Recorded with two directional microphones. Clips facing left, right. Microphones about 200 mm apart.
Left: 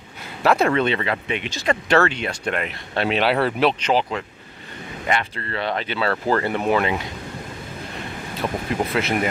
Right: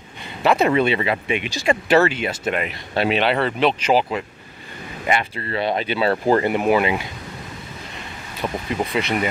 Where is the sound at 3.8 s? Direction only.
10° right (ahead or behind).